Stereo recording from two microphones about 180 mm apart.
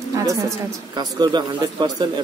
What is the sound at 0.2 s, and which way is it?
A woman's voice, 20° right (ahead or behind).